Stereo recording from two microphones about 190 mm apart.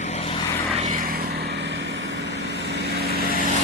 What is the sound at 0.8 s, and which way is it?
Vehicle, 40° right (ahead or behind).